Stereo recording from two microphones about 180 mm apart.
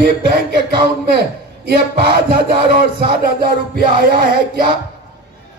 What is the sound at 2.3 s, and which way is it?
Speech, 60° right (ahead or behind).